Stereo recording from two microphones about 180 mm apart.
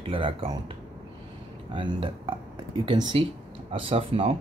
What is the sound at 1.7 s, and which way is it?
Speech, 30° right (ahead or behind).